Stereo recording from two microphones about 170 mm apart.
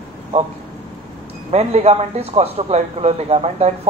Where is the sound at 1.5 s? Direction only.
40° right (ahead or behind).